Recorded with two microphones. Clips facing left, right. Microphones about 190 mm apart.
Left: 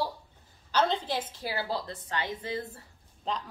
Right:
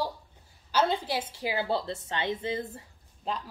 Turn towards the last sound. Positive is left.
turn(degrees=-5)  # may be behind; listen again after turning